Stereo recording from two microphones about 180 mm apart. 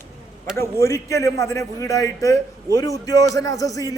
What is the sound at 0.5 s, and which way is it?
A man's voice, 15° left (ahead or behind).